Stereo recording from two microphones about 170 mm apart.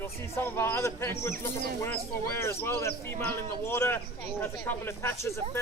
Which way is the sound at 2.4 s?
15° left (ahead or behind).